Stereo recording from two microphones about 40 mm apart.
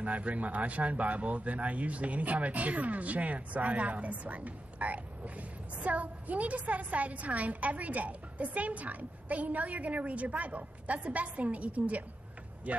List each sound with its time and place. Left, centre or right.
0.0 s a woman's voice: right